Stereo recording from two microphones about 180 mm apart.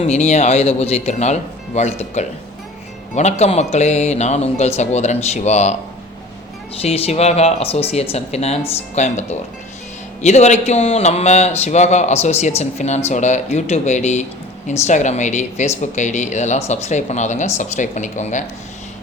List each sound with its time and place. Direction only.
0.0 s speech: 40° left (ahead or behind)
6.8 s speech: 35° left (ahead or behind)